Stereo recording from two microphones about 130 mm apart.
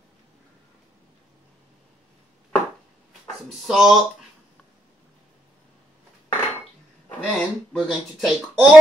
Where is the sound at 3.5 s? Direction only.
Centre (ahead or behind).